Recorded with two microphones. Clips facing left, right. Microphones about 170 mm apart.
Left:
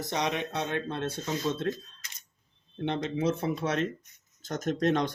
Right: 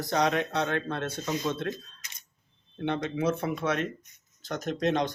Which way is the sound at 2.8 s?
30° left (ahead or behind).